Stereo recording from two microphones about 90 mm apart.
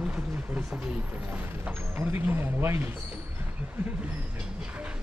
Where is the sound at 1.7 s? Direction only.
20° right (ahead or behind).